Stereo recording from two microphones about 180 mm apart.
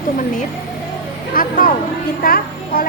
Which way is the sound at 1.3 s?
50° left (ahead or behind).